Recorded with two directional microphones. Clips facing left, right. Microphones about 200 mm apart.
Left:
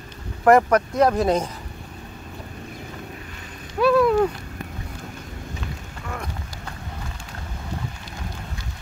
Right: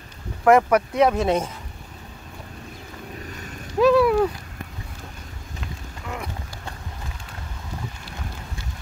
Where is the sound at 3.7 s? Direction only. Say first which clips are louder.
Right 1 dB; 10° right (ahead or behind).